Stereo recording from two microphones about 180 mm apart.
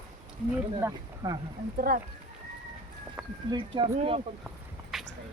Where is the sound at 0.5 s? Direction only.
15° right (ahead or behind).